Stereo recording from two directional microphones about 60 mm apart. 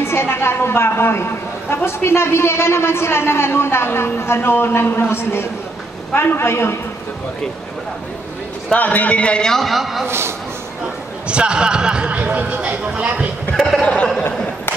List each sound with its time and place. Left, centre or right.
0.0 s a man's voice: left
8.7 s a man's voice: left; by 10.0 s centre
10.0 s a man's voice: right
11.2 s a man's voice: centre
13.7 s speech: left